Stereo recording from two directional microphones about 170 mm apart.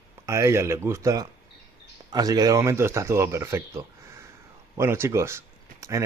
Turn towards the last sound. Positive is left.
turn(degrees=-15)  # may be behind; listen again after turning